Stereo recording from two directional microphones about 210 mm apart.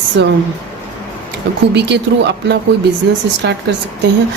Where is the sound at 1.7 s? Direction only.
55° right (ahead or behind).